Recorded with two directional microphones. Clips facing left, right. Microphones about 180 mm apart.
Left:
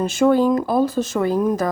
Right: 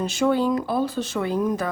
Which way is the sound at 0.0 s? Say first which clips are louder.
Left 5 dB; 50° left (ahead or behind).